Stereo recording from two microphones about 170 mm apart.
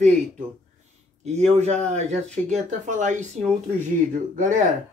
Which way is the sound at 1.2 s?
40° right (ahead or behind).